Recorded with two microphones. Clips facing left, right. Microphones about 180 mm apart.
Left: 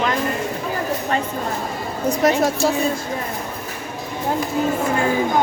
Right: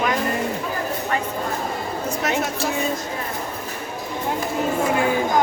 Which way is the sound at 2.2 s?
35° left (ahead or behind).